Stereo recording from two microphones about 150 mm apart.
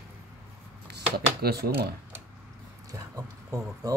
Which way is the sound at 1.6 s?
90° right.